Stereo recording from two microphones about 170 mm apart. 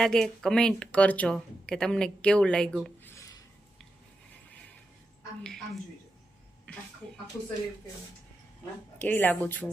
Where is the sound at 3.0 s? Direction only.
15° left (ahead or behind).